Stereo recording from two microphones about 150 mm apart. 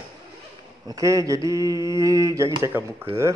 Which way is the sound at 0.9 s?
20° right (ahead or behind).